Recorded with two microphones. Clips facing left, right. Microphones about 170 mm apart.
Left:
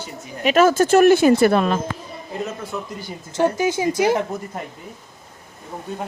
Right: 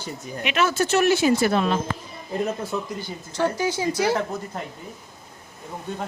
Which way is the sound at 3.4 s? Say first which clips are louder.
Left 4 dB; 15° left (ahead or behind).